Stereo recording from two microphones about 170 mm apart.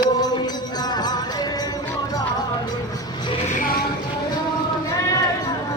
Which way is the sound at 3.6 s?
60° left (ahead or behind).